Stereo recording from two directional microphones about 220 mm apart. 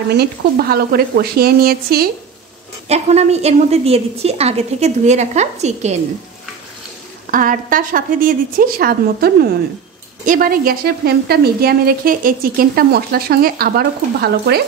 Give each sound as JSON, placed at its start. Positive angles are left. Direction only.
{"t": 0.1, "sound": "a woman's voice", "side_deg": -45}
{"t": 2.9, "sound": "a woman's voice", "side_deg": -30}
{"t": 7.2, "sound": "a woman's voice", "side_deg": -40}